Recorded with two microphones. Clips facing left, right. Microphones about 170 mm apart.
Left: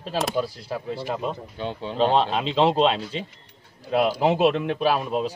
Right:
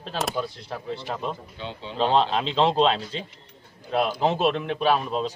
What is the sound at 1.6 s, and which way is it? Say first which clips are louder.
Speech: left 6 dB; 50° left (ahead or behind).